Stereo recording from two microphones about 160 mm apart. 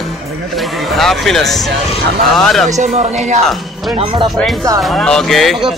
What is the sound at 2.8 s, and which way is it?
Speech, 45° right (ahead or behind).